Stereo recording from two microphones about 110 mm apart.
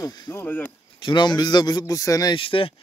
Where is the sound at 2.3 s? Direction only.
55° left (ahead or behind).